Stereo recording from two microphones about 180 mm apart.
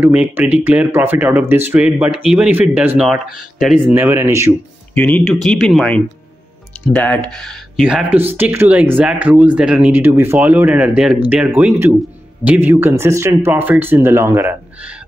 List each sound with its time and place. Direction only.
0.0 s speech: 10° right (ahead or behind)
3.9 s speech: 10° right (ahead or behind)
4.9 s speech: 10° left (ahead or behind); by 14.6 s 15° right (ahead or behind)